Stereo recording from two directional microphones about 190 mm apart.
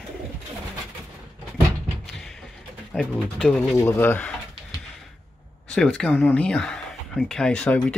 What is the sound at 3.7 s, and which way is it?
Speech, 10° left (ahead or behind).